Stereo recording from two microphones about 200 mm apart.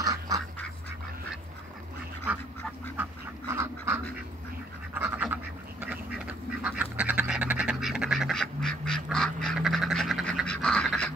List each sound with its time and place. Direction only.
0.0 s duck: 15° right (ahead or behind)
3.0 s duck: 10° right (ahead or behind); by 11.1 s 5° left (ahead or behind)